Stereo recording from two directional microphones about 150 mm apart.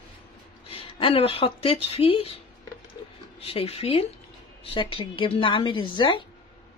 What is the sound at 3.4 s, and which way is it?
Speech, 40° left (ahead or behind).